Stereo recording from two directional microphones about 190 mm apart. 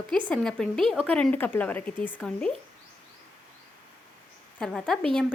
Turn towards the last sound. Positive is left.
turn(degrees=5)  # may be behind; listen again after turning